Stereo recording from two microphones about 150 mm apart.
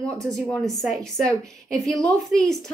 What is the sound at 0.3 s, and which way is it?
A woman's voice, centre (ahead or behind).